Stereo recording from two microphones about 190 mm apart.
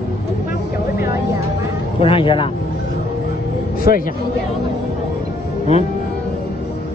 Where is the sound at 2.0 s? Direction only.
25° left (ahead or behind).